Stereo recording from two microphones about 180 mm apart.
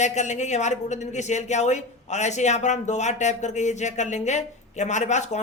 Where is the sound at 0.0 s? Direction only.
40° left (ahead or behind).